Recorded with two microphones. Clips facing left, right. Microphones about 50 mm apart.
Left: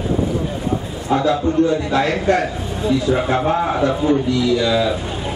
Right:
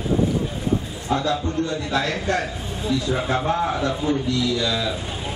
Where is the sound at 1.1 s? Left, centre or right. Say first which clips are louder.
Left 6 dB; centre.